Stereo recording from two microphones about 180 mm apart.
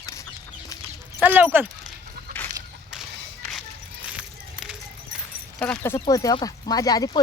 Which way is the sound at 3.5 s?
5° right (ahead or behind).